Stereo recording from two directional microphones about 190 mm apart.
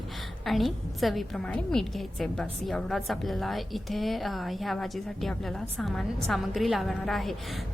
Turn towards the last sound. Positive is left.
turn(degrees=0)  # may be behind; listen again after turning